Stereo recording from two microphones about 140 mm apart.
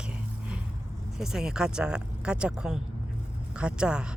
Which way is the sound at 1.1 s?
5° right (ahead or behind).